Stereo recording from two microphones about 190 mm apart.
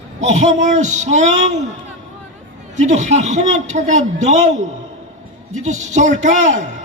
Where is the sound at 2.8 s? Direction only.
40° right (ahead or behind).